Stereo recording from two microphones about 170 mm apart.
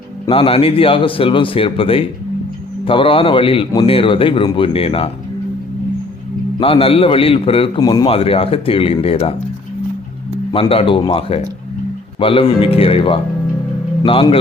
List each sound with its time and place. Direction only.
0.3 s a man's voice: 35° left (ahead or behind)
6.6 s a man's voice: 35° left (ahead or behind)
10.5 s a man's voice: 30° left (ahead or behind)